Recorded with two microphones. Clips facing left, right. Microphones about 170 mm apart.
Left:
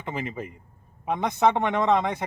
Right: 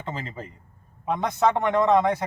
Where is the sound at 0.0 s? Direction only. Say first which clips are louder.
Left 2 dB; 15° left (ahead or behind).